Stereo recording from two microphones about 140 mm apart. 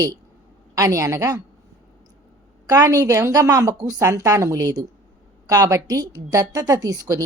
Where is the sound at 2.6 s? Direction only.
25° right (ahead or behind).